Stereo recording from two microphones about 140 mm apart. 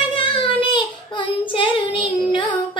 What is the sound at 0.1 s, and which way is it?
Child singing, 40° left (ahead or behind).